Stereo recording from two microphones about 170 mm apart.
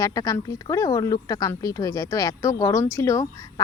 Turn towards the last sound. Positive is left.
turn(degrees=20)  # may be behind; listen again after turning